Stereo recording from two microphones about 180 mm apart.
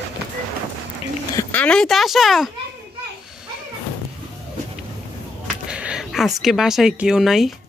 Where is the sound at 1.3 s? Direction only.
10° left (ahead or behind).